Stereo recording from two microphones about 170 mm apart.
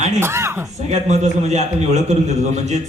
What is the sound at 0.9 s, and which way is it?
A man's voice, 40° right (ahead or behind).